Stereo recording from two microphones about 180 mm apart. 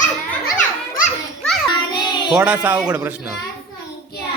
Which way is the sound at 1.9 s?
25° left (ahead or behind).